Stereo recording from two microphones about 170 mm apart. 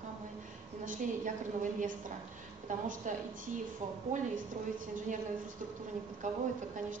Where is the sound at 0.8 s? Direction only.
50° right (ahead or behind).